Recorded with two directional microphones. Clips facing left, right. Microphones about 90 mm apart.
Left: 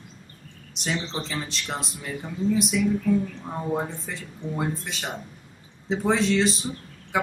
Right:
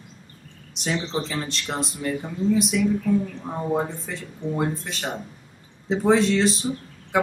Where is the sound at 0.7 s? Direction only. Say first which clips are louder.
Right 3 dB; centre (ahead or behind).